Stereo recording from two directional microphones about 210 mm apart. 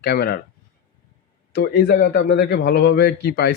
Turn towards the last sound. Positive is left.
turn(degrees=50)  # may be behind; listen again after turning